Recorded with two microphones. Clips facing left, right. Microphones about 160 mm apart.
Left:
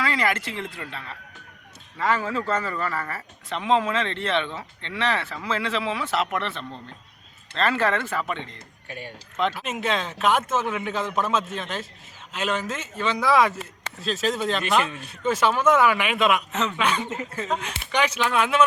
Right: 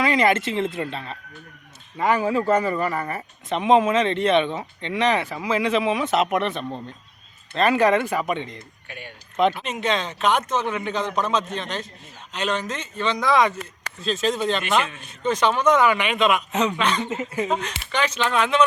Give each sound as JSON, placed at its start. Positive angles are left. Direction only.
{"t": 0.0, "sound": "speech", "side_deg": -20}
{"t": 8.9, "sound": "speech", "side_deg": 35}
{"t": 9.6, "sound": "speech", "side_deg": 5}
{"t": 16.5, "sound": "speech", "side_deg": -15}
{"t": 16.7, "sound": "speech", "side_deg": 5}